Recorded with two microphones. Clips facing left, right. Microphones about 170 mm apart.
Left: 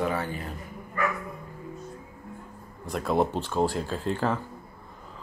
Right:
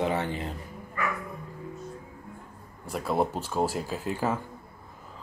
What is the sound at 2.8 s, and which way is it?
Speech, 5° right (ahead or behind).